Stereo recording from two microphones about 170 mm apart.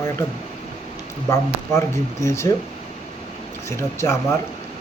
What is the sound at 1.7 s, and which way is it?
Speech, 15° left (ahead or behind).